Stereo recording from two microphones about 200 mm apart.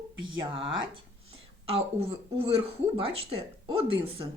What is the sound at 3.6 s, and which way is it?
Speech, 25° right (ahead or behind).